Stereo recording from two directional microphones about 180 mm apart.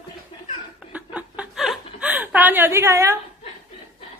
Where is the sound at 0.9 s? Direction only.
5° right (ahead or behind).